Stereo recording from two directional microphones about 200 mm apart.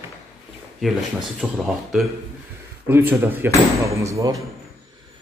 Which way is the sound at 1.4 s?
Centre (ahead or behind).